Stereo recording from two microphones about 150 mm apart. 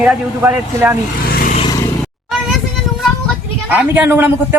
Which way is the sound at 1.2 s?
75° left (ahead or behind).